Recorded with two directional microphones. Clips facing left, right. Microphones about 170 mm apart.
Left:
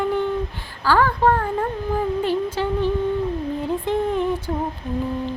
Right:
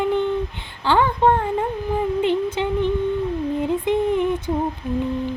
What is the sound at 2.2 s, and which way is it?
Music, 20° right (ahead or behind).